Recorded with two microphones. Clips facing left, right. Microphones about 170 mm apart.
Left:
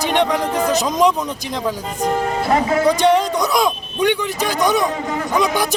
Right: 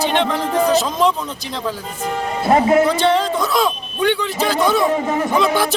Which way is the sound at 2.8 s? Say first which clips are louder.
Left 2 dB; 15° left (ahead or behind).